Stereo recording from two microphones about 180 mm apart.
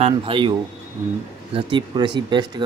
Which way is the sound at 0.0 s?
30° right (ahead or behind).